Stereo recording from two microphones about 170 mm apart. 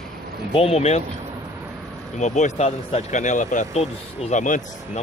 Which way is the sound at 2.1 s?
45° left (ahead or behind).